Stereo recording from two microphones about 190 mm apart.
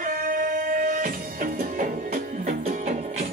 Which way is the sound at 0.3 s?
45° right (ahead or behind).